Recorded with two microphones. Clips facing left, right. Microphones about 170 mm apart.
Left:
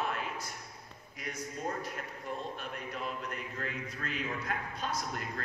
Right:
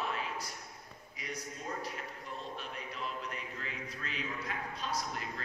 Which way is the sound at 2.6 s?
50° left (ahead or behind).